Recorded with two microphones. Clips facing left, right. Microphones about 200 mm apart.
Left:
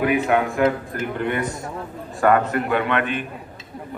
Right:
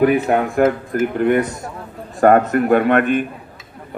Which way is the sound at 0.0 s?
40° right (ahead or behind).